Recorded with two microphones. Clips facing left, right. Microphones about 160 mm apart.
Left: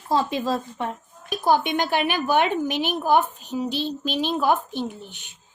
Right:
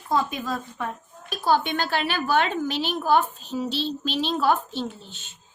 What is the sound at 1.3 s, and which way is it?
Speech, 15° left (ahead or behind).